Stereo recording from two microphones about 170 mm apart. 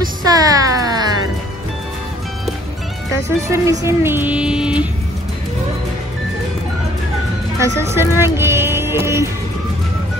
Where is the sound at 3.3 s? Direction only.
15° right (ahead or behind).